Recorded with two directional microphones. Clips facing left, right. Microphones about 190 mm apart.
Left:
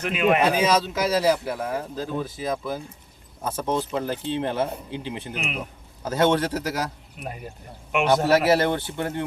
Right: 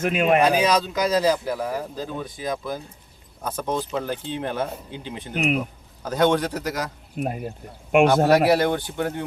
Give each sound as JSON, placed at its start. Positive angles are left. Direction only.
{"t": 0.0, "sound": "speech", "side_deg": -45}
{"t": 0.4, "sound": "a man's voice", "side_deg": 5}
{"t": 7.2, "sound": "speech", "side_deg": -50}
{"t": 8.4, "sound": "a man's voice", "side_deg": 0}